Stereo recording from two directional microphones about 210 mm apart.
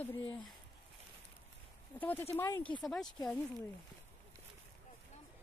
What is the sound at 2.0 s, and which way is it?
Speech, 10° left (ahead or behind).